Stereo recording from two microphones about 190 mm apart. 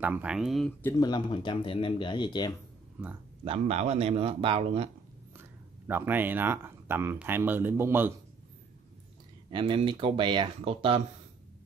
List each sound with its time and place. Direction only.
0.0 s speech: 5° right (ahead or behind)
0.9 s speech: 20° left (ahead or behind)
3.0 s speech: 5° right (ahead or behind)
3.4 s a man's voice: 35° right (ahead or behind)
5.4 s speech: 10° right (ahead or behind)
9.5 s speech: 25° right (ahead or behind)